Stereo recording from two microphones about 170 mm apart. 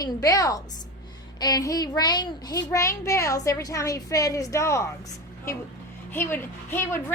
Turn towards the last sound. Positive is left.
turn(degrees=15)  # may be behind; listen again after turning